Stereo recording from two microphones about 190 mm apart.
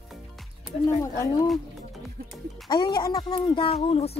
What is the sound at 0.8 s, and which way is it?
Speech, 15° left (ahead or behind).